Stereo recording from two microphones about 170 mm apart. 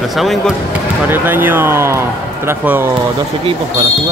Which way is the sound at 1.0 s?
10° right (ahead or behind).